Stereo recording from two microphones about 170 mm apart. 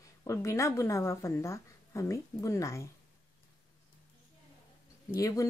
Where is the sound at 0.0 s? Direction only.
20° left (ahead or behind).